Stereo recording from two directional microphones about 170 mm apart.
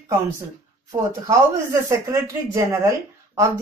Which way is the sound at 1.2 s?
20° right (ahead or behind).